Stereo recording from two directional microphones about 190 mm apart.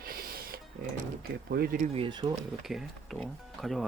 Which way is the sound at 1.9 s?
25° right (ahead or behind).